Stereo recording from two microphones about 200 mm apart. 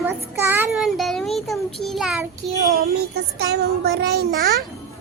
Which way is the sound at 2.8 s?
55° right (ahead or behind).